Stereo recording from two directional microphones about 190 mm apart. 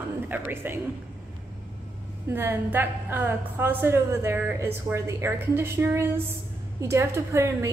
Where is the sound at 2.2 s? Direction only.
10° right (ahead or behind).